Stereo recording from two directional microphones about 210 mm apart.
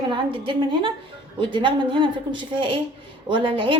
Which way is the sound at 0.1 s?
25° right (ahead or behind).